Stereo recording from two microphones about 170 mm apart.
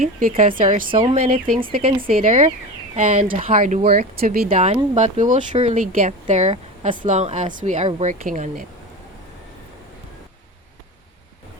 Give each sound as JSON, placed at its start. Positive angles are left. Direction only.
{"t": 0.0, "sound": "speech", "side_deg": -55}
{"t": 8.2, "sound": "speech", "side_deg": -55}